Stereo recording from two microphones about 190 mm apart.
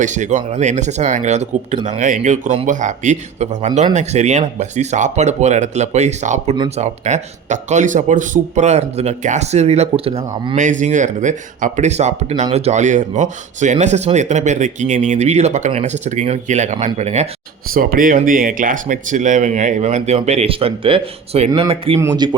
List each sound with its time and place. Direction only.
0.0 s speech: 40° right (ahead or behind)
17.7 s speech: 50° right (ahead or behind); by 22.4 s 25° right (ahead or behind)